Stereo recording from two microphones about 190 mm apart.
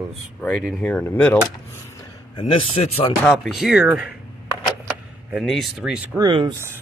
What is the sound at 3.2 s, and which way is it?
Speech, centre (ahead or behind).